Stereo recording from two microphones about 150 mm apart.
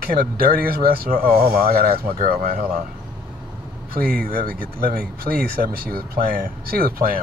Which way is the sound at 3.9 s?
75° right (ahead or behind).